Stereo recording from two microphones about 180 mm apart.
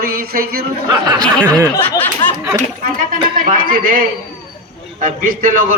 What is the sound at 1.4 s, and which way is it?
Speech, 15° right (ahead or behind).